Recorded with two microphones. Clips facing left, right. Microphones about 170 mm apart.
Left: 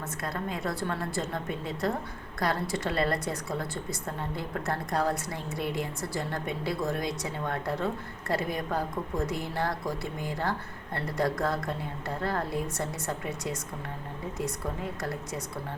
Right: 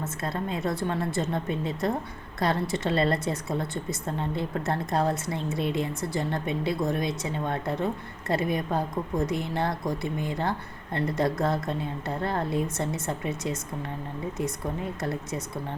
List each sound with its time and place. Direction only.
0.0 s a woman's voice: 25° right (ahead or behind)